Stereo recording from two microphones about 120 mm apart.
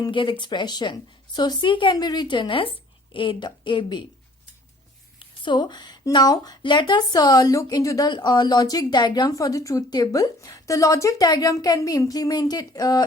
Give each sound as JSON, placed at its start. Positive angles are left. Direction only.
{"t": 0.0, "sound": "speech", "side_deg": 45}
{"t": 5.2, "sound": "speech", "side_deg": 40}